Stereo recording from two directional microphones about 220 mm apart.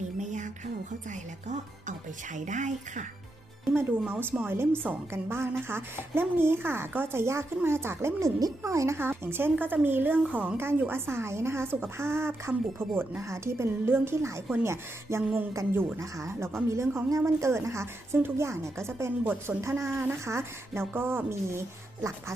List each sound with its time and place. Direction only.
0.2 s music: 35° right (ahead or behind)
3.7 s a woman's voice: 10° right (ahead or behind)